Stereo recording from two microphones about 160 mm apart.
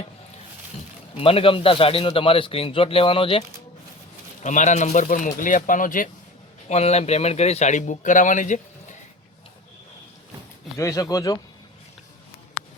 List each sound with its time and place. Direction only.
1.1 s a man's voice: 35° left (ahead or behind)
4.4 s a man's voice: 50° left (ahead or behind)
6.7 s a man's voice: 40° left (ahead or behind)
10.8 s speech: 20° left (ahead or behind)